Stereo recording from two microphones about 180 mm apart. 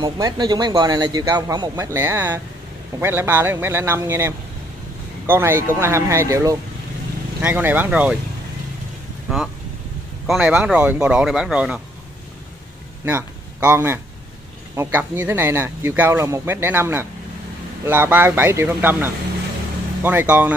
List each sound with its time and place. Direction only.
0.0 s a man's voice: 20° right (ahead or behind)
9.3 s speech: 5° right (ahead or behind)
13.0 s speech: 10° right (ahead or behind)